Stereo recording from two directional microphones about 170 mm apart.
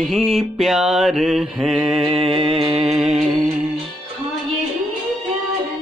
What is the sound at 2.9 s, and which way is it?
Mantra, 5° right (ahead or behind).